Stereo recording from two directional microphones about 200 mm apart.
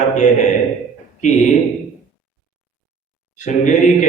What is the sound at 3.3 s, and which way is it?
Speech, 35° left (ahead or behind).